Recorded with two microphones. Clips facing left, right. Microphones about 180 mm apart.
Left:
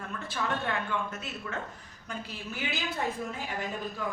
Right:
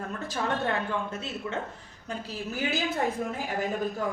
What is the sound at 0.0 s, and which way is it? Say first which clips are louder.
Speech: right 3 dB; 40° right (ahead or behind).